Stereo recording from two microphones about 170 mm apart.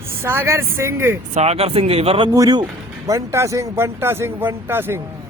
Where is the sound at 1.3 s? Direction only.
40° right (ahead or behind).